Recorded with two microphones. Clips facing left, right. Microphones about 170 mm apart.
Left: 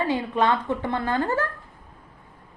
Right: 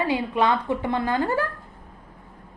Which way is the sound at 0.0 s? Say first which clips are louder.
Even; 10° right (ahead or behind).